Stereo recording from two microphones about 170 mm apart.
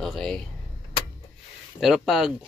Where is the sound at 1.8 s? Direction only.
Centre (ahead or behind).